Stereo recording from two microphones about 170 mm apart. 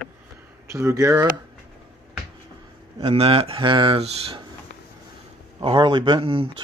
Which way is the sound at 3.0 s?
35° right (ahead or behind).